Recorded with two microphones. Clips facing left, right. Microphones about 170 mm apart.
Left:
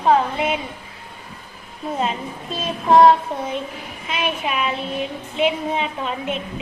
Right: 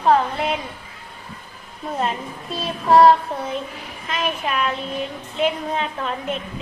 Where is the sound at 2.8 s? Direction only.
20° left (ahead or behind).